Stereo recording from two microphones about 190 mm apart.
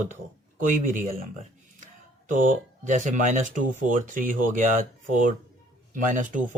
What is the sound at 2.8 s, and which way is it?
Speech, 40° right (ahead or behind).